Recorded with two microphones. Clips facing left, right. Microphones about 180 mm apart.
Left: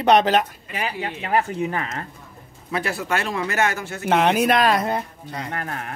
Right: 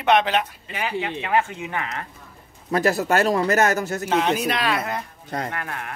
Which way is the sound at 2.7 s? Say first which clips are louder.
Right 5 dB; 40° right (ahead or behind).